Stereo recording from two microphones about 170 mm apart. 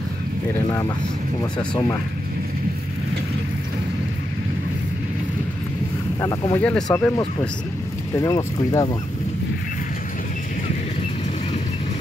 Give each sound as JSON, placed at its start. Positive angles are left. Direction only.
{"t": 0.7, "sound": "speech", "side_deg": 20}
{"t": 6.2, "sound": "speech", "side_deg": 20}
{"t": 6.6, "sound": "speech", "side_deg": 5}